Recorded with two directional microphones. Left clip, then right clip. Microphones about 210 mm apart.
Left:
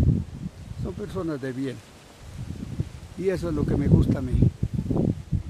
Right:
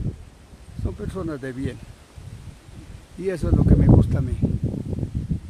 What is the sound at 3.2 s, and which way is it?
Speech, 5° right (ahead or behind).